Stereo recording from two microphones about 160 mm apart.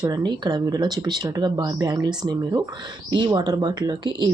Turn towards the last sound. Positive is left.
turn(degrees=-25)  # may be behind; listen again after turning